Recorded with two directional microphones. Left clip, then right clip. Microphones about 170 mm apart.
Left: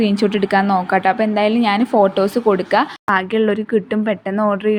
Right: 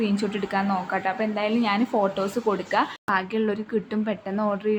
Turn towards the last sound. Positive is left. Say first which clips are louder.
# left 8 dB
turn(degrees=35)  # may be behind; listen again after turning